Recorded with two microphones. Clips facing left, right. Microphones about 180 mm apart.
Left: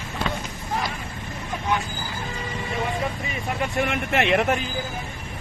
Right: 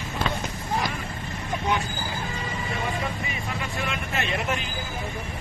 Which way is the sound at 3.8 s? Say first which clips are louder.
Left 7 dB; 70° left (ahead or behind).